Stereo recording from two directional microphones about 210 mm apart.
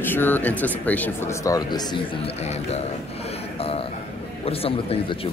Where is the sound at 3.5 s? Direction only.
30° left (ahead or behind).